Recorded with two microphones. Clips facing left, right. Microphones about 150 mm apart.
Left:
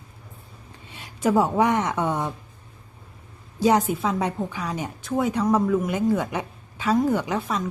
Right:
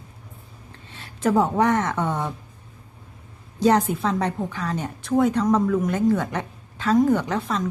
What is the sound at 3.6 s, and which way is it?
A woman's voice, 10° left (ahead or behind).